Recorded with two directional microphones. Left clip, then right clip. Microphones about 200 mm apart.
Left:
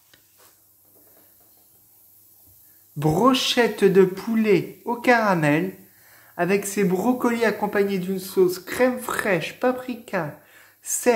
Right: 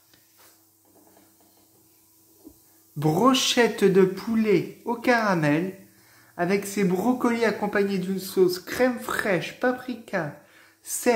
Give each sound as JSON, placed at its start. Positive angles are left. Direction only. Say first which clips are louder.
{"t": 3.0, "sound": "speech", "louder": "left 2 dB", "side_deg": 10}